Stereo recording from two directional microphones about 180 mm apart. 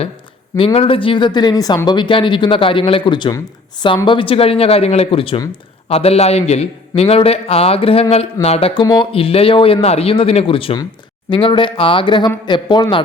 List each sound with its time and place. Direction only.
0.5 s speech: 30° left (ahead or behind)